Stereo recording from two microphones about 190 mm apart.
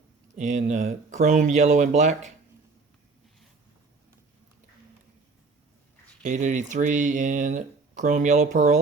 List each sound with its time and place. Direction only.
0.3 s speech: 40° right (ahead or behind)
6.2 s speech: 40° right (ahead or behind)